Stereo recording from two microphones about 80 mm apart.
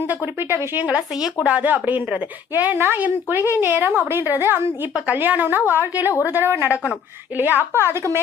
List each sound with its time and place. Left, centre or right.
0.8 s a woman's voice: centre